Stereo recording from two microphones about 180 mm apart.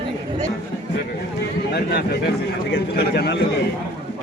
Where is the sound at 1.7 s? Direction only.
65° left (ahead or behind).